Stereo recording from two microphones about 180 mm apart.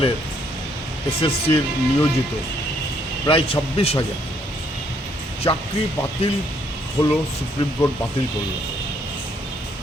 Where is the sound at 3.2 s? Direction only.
30° left (ahead or behind).